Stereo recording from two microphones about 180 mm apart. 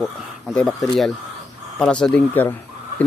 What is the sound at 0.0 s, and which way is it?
Speech, 5° left (ahead or behind).